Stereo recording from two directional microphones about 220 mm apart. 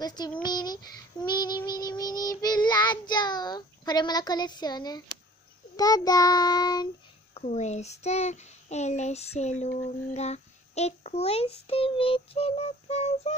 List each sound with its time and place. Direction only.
0.0 s a child's voice: 20° left (ahead or behind)
1.2 s child singing: 20° left (ahead or behind)
7.3 s a child's voice: 30° left (ahead or behind)